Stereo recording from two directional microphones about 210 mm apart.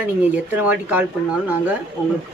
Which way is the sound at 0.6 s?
5° right (ahead or behind).